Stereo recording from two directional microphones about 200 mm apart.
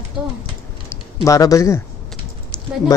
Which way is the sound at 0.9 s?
15° left (ahead or behind).